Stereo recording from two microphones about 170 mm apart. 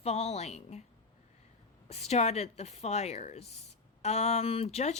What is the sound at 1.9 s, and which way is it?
A woman's voice, 40° left (ahead or behind).